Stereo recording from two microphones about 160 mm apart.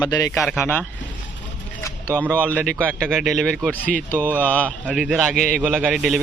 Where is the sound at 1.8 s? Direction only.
15° left (ahead or behind).